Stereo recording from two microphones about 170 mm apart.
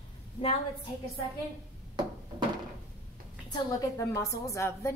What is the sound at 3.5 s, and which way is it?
A woman's voice, 20° left (ahead or behind).